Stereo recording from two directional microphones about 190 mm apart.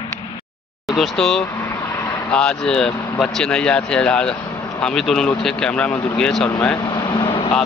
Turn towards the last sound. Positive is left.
turn(degrees=25)  # may be behind; listen again after turning